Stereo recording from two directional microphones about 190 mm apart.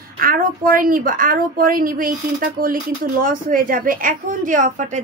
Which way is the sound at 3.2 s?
50° right (ahead or behind).